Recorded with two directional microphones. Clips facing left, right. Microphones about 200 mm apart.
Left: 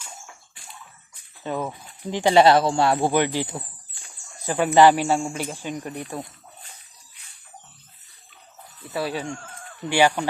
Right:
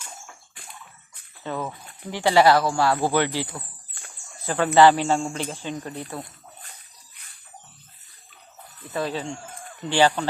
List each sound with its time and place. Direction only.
1.5 s speech: 15° left (ahead or behind)
8.9 s speech: 10° left (ahead or behind)
9.2 s a sound: 15° right (ahead or behind)
9.9 s speech: 15° left (ahead or behind)